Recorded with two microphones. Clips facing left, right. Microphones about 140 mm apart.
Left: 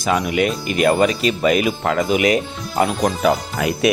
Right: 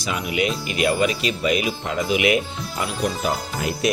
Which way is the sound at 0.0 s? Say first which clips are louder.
Left 6 dB; 45° left (ahead or behind).